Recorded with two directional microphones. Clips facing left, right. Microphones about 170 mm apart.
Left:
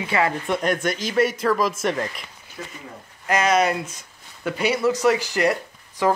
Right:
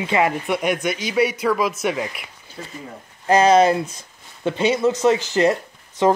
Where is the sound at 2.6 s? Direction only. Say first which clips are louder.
Right 2 dB; 30° right (ahead or behind).